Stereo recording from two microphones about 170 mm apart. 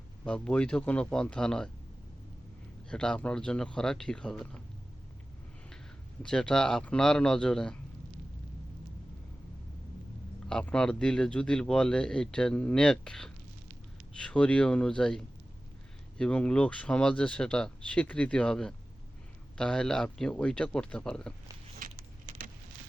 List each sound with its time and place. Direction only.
0.3 s speech: 5° left (ahead or behind)
2.9 s speech: 5° left (ahead or behind)
6.2 s speech: 5° left (ahead or behind)
10.5 s speech: 5° left (ahead or behind)
21.8 s a sound: 55° right (ahead or behind)